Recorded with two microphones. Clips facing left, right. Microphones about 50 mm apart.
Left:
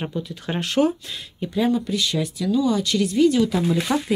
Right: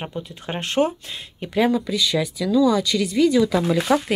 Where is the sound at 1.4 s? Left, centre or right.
Right.